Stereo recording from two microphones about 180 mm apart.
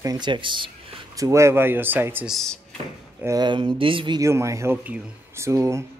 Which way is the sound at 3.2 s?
20° right (ahead or behind).